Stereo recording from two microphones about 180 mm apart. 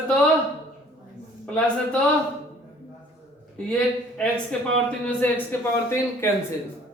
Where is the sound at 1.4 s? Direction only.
5° left (ahead or behind).